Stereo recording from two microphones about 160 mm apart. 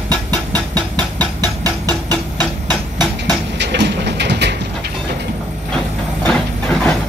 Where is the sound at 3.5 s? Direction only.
90° right.